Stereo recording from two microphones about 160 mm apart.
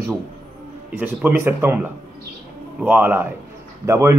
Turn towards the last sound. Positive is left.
turn(degrees=-15)  # may be behind; listen again after turning